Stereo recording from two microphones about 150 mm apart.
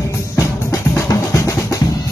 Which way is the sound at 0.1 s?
20° left (ahead or behind).